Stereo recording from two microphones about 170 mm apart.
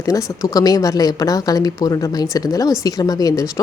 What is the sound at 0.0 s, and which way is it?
Speech, 20° left (ahead or behind).